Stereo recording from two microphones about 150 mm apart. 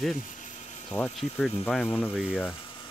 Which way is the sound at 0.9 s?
25° left (ahead or behind).